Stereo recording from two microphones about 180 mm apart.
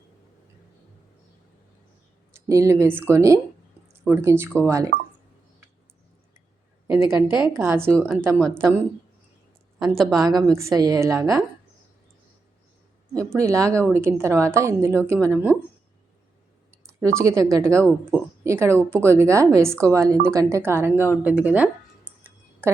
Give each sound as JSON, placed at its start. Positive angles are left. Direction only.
{"t": 2.3, "sound": "a woman's voice", "side_deg": -15}
{"t": 4.9, "sound": "speech", "side_deg": -55}
{"t": 6.8, "sound": "a woman's voice", "side_deg": -15}
{"t": 10.0, "sound": "a woman's voice", "side_deg": 0}
{"t": 10.3, "sound": "a woman's voice", "side_deg": -20}
{"t": 13.1, "sound": "a woman's voice", "side_deg": -15}
{"t": 17.0, "sound": "a woman's voice", "side_deg": -15}
{"t": 18.1, "sound": "a sound", "side_deg": -15}
{"t": 18.9, "sound": "a woman's voice", "side_deg": -15}
{"t": 21.2, "sound": "a sound", "side_deg": -10}